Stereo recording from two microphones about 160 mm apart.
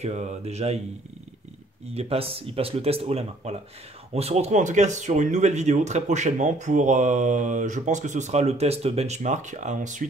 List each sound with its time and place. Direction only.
0.0 s speech: 50° right (ahead or behind)
2.0 s speech: 35° right (ahead or behind)